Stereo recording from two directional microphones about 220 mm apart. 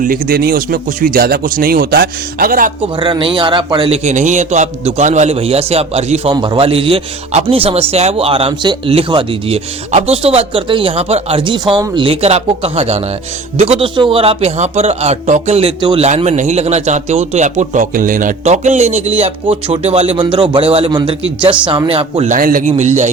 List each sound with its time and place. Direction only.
0.0 s a man's voice: 40° right (ahead or behind)
3.0 s a man's voice: 20° right (ahead or behind)